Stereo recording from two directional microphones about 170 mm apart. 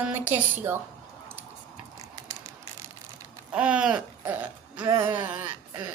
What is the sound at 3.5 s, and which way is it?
Speech, 5° right (ahead or behind).